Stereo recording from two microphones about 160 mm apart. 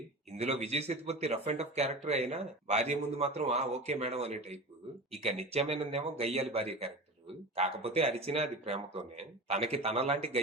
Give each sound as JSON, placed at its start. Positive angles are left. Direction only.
{"t": 0.3, "sound": "speech", "side_deg": -40}